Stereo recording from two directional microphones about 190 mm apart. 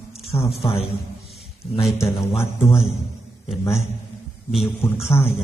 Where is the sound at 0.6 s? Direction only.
30° left (ahead or behind).